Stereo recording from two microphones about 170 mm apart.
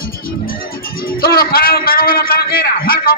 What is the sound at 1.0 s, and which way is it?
A man's voice, 60° left (ahead or behind).